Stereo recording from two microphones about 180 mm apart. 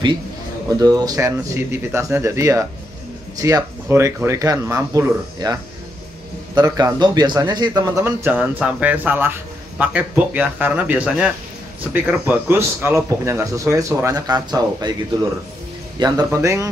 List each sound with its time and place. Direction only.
0.7 s a man's voice: 20° right (ahead or behind)
8.0 s speech: 10° right (ahead or behind)
16.0 s speech: 20° right (ahead or behind)